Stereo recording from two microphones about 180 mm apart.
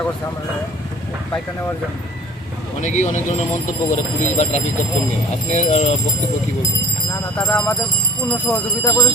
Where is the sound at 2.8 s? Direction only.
45° left (ahead or behind).